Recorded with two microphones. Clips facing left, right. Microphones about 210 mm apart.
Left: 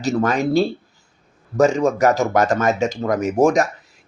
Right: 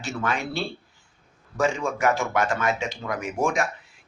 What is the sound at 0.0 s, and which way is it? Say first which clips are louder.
Speech: left 10 dB; 40° left (ahead or behind).